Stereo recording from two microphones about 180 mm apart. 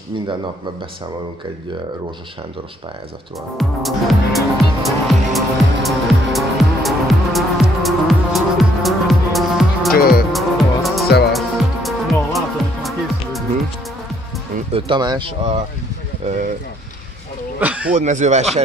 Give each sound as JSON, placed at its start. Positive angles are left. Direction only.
{"t": 3.5, "sound": "music", "side_deg": 0}
{"t": 9.9, "sound": "music", "side_deg": 55}
{"t": 10.3, "sound": "music", "side_deg": 0}
{"t": 14.7, "sound": "speech", "side_deg": -30}
{"t": 16.2, "sound": "speech", "side_deg": -40}
{"t": 17.6, "sound": "a sound", "side_deg": -10}
{"t": 17.9, "sound": "speech", "side_deg": -40}